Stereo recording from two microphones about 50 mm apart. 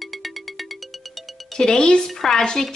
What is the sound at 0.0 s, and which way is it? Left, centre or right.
Music, centre.